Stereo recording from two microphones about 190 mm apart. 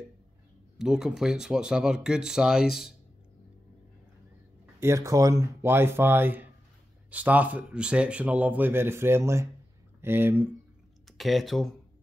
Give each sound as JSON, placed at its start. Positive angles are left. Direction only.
{"t": 0.7, "sound": "speech", "side_deg": -5}
{"t": 4.7, "sound": "speech", "side_deg": -15}
{"t": 11.1, "sound": "speech", "side_deg": 0}